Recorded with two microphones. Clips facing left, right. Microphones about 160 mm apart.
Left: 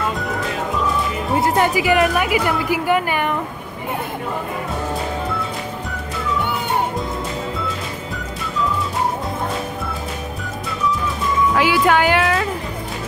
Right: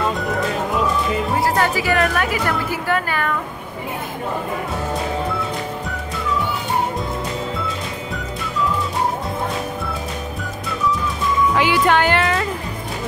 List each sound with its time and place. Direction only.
1.4 s a woman's voice: 20° left (ahead or behind)
11.5 s speech: 5° left (ahead or behind)